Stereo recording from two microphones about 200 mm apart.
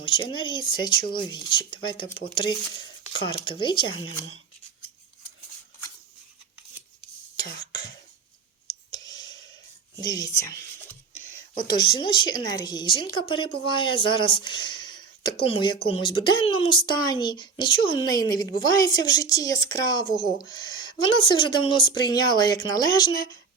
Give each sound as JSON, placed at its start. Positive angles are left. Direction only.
{"t": 0.3, "sound": "speech", "side_deg": 25}
{"t": 7.3, "sound": "throat clearing", "side_deg": 20}
{"t": 8.9, "sound": "clicking", "side_deg": 20}
{"t": 10.0, "sound": "speech", "side_deg": 20}